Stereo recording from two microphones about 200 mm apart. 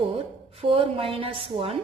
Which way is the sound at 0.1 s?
25° right (ahead or behind).